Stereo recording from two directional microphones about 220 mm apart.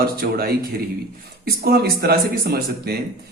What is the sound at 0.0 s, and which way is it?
A man's voice, 45° right (ahead or behind).